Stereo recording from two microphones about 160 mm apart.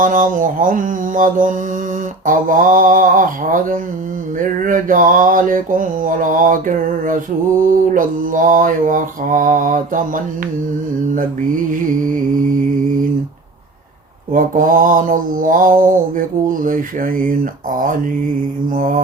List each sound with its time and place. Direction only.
0.0 s mantra: 55° right (ahead or behind)
14.3 s mantra: 60° right (ahead or behind)